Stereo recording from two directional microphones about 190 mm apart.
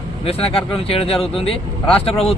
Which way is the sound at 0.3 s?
30° left (ahead or behind).